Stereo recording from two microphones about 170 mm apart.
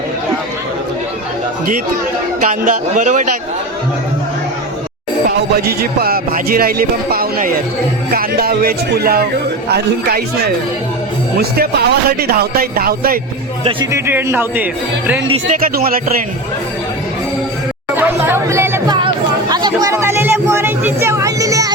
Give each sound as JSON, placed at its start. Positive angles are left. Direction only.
{"t": 2.4, "sound": "a man's voice", "side_deg": -45}
{"t": 5.5, "sound": "a man's voice", "side_deg": -65}
{"t": 11.3, "sound": "speech", "side_deg": -65}
{"t": 13.9, "sound": "speech", "side_deg": -15}
{"t": 15.6, "sound": "speech", "side_deg": -60}
{"t": 17.9, "sound": "chatter", "side_deg": -15}
{"t": 19.0, "sound": "a sound", "side_deg": -25}